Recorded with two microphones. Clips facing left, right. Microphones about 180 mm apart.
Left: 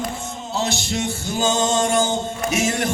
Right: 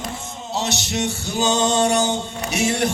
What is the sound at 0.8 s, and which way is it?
Music, 45° left (ahead or behind).